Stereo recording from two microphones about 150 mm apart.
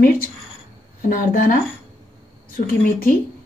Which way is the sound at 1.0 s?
70° left (ahead or behind).